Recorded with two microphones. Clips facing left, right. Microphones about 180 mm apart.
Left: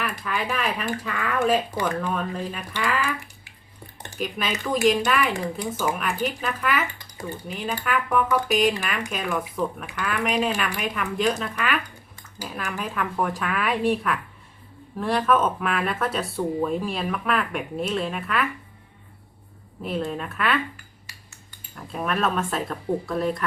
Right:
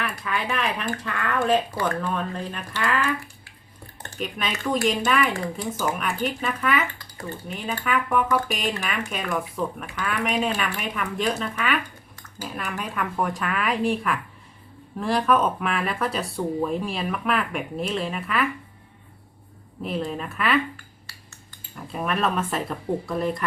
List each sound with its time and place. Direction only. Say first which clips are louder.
0.0 s speech: even; centre (ahead or behind)
1.7 s speech: even; 15° left (ahead or behind)
2.1 s speech: left 1 dB; centre (ahead or behind)
4.2 s speech: left 1 dB; centre (ahead or behind)
5.3 s speech: left 1 dB; 15° left (ahead or behind)
5.8 s speech: even; centre (ahead or behind)
7.0 s typing: left 1 dB; 15° left (ahead or behind)
7.4 s speech: even; centre (ahead or behind)
19.8 s speech: even; centre (ahead or behind)
21.8 s speech: even; centre (ahead or behind)